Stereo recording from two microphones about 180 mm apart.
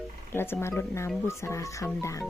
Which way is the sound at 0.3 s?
10° left (ahead or behind).